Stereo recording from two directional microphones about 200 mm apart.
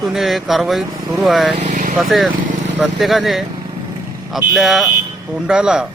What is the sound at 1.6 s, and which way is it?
Vehicle, 40° right (ahead or behind).